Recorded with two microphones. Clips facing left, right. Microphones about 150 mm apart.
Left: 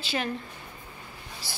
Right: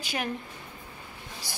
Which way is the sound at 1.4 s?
15° right (ahead or behind).